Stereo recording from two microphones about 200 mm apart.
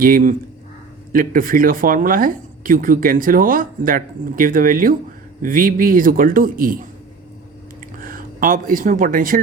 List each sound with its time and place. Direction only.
0.0 s speech: 45° right (ahead or behind)
7.9 s speech: 45° right (ahead or behind)